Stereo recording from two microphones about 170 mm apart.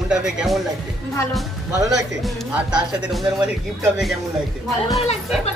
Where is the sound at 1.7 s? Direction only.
20° right (ahead or behind).